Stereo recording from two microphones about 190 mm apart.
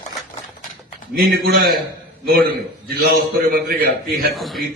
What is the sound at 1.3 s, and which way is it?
Speech, 55° right (ahead or behind).